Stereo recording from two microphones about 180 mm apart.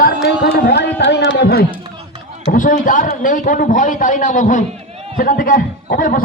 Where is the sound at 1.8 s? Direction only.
25° right (ahead or behind).